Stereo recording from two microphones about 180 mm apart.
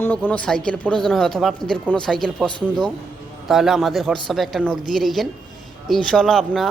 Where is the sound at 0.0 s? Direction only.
10° left (ahead or behind).